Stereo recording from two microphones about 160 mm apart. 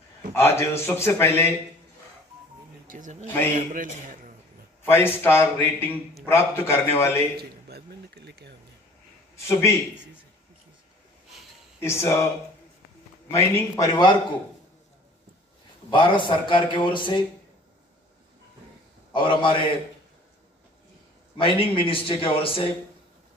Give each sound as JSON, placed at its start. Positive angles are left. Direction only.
{"t": 0.3, "sound": "a man's voice", "side_deg": 15}
{"t": 2.9, "sound": "a man's voice", "side_deg": -50}
{"t": 4.8, "sound": "a man's voice", "side_deg": 15}
{"t": 7.3, "sound": "a sound", "side_deg": -85}
{"t": 9.5, "sound": "a man's voice", "side_deg": 15}
{"t": 11.8, "sound": "a man's voice", "side_deg": 15}
{"t": 13.3, "sound": "a man's voice", "side_deg": 20}
{"t": 15.9, "sound": "a man's voice", "side_deg": 30}
{"t": 19.1, "sound": "a man's voice", "side_deg": 30}
{"t": 21.4, "sound": "a man's voice", "side_deg": 35}